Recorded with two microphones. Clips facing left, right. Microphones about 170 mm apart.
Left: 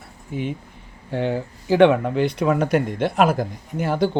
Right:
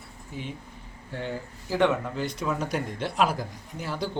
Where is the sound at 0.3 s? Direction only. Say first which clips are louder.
Left 10 dB; 55° left (ahead or behind).